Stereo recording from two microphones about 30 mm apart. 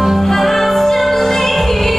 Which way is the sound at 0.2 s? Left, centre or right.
Centre.